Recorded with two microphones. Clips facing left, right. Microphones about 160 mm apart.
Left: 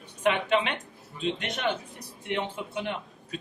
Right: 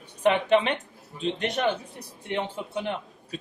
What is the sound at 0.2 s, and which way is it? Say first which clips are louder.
Speech: right 4 dB; 35° right (ahead or behind).